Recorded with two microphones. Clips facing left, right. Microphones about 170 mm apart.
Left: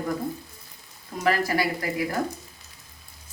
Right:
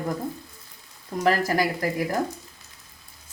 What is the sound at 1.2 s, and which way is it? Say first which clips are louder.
Speech: right 2 dB; 40° right (ahead or behind).